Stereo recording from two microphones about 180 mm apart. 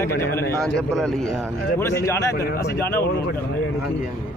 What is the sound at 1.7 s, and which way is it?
Speech, 15° left (ahead or behind).